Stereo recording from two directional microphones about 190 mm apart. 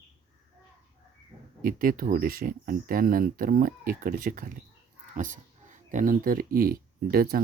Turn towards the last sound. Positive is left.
turn(degrees=-50)  # may be behind; listen again after turning